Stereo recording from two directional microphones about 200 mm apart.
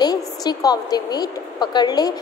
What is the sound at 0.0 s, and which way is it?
A woman's voice, 20° left (ahead or behind).